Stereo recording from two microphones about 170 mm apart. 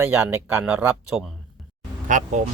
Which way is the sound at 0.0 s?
10° right (ahead or behind).